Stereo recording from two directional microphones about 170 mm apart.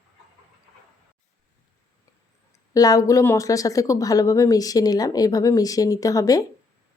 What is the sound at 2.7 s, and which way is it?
A woman's voice, 20° left (ahead or behind).